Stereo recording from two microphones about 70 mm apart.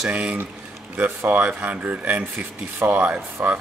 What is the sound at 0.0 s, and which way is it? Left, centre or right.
A man's voice, centre.